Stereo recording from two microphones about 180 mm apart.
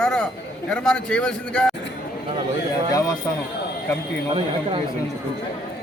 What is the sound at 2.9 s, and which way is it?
Speech, 20° left (ahead or behind).